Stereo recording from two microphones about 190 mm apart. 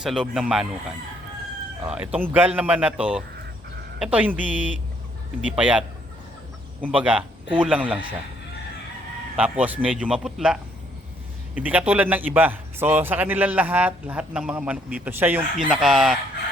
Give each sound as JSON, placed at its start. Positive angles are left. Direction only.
{"t": 0.0, "sound": "a man's voice", "side_deg": -5}
{"t": 5.5, "sound": "a man's voice", "side_deg": -5}
{"t": 6.8, "sound": "a man's voice", "side_deg": -10}
{"t": 9.3, "sound": "a man's voice", "side_deg": -5}